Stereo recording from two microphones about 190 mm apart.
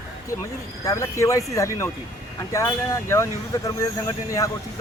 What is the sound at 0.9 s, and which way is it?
Speech, 15° left (ahead or behind).